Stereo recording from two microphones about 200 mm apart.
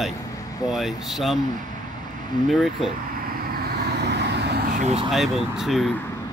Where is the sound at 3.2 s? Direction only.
50° right (ahead or behind).